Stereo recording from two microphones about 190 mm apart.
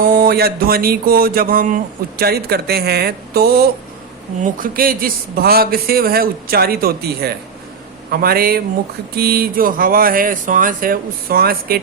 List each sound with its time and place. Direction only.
0.0 s speech: 50° right (ahead or behind)